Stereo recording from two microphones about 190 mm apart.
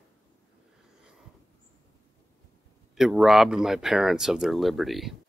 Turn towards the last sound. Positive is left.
turn(degrees=0)  # may be behind; listen again after turning